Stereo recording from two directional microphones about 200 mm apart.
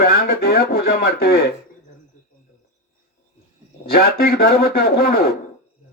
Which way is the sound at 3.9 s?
50° left (ahead or behind).